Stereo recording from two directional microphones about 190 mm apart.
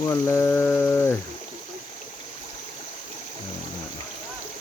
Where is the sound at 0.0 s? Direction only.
15° left (ahead or behind).